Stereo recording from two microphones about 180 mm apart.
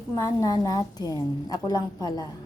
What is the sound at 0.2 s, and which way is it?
A woman's voice, 15° left (ahead or behind).